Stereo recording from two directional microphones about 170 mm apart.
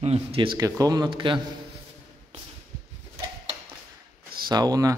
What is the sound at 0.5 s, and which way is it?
Speech, 20° right (ahead or behind).